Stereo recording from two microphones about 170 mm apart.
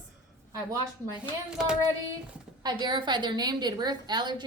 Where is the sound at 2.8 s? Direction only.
25° right (ahead or behind).